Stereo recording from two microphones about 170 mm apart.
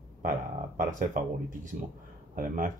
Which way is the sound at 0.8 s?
50° right (ahead or behind).